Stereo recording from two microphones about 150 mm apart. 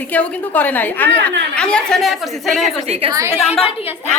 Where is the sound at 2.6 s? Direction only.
40° right (ahead or behind).